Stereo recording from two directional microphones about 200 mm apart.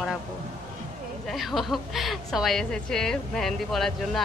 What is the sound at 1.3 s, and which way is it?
Speech, centre (ahead or behind).